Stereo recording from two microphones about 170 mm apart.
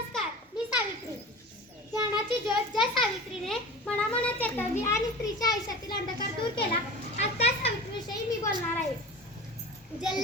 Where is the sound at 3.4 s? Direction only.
5° left (ahead or behind); by 6.0 s 20° left (ahead or behind).